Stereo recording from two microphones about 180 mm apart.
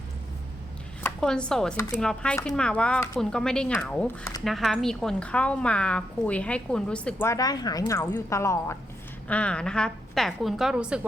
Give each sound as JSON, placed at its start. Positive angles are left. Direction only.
{"t": 1.0, "sound": "speech", "side_deg": 5}
{"t": 4.2, "sound": "speech", "side_deg": 20}
{"t": 4.4, "sound": "a woman's voice", "side_deg": 0}